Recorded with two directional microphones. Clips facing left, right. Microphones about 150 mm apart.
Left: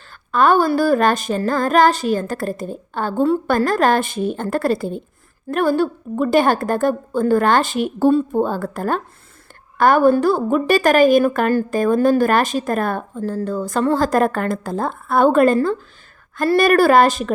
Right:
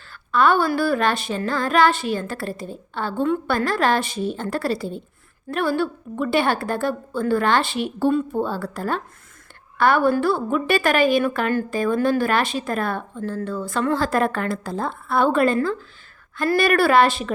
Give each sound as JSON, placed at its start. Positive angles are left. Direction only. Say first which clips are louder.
{"t": 0.1, "sound": "a sound", "louder": "left 3 dB", "side_deg": 45}
{"t": 0.7, "sound": "a woman's voice", "louder": "left 5 dB", "side_deg": 40}
{"t": 16.6, "sound": "a woman's voice", "louder": "left 4 dB", "side_deg": 40}